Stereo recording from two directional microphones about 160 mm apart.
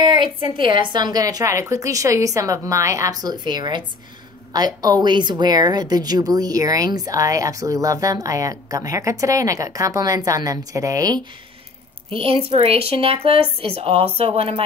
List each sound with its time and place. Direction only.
0.0 s a woman's voice: 30° right (ahead or behind)
12.1 s speech: 35° right (ahead or behind)